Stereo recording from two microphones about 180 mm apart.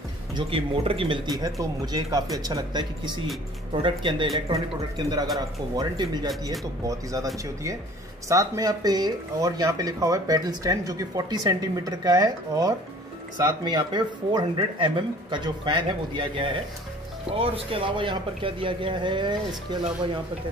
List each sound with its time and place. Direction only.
0.3 s speech: 30° right (ahead or behind)
8.3 s speech: 20° right (ahead or behind)